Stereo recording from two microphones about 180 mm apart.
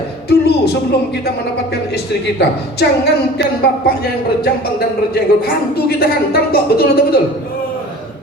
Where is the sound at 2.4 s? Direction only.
65° left (ahead or behind).